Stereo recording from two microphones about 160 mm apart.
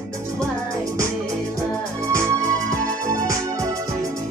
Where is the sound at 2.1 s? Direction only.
20° right (ahead or behind).